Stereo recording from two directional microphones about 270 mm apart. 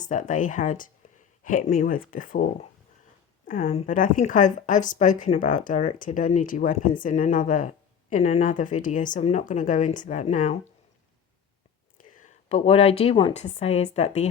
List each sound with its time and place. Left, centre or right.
0.0 s a woman's voice: left
11.9 s a woman's voice: left